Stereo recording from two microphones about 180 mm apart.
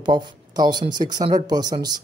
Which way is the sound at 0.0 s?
25° right (ahead or behind).